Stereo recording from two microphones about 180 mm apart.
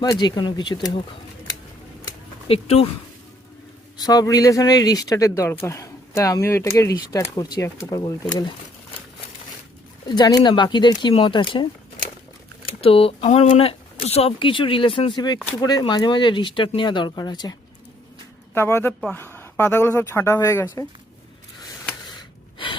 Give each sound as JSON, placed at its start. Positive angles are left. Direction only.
{"t": 0.0, "sound": "speech", "side_deg": 20}
{"t": 2.5, "sound": "speech", "side_deg": 35}
{"t": 3.9, "sound": "speech", "side_deg": 20}
{"t": 10.1, "sound": "speech", "side_deg": 20}